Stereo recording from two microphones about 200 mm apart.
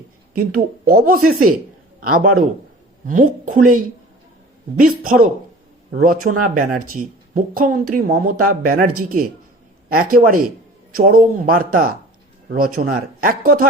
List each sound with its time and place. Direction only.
0.3 s a man's voice: 45° right (ahead or behind)
4.8 s speech: 45° right (ahead or behind)